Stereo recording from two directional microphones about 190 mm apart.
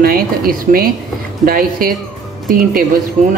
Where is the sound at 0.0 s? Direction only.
50° right (ahead or behind).